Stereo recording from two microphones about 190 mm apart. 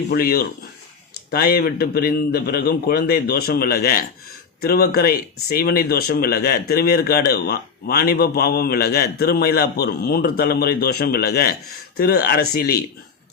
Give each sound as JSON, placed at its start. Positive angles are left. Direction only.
{"t": 0.1, "sound": "speech", "side_deg": 55}